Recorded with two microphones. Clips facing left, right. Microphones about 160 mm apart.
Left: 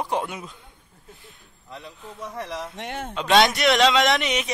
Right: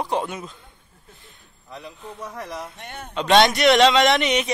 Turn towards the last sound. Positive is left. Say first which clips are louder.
# right 3 dB
turn(degrees=0)  # may be behind; listen again after turning